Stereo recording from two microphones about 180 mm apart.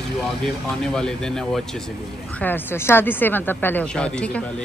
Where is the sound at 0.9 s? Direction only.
5° left (ahead or behind).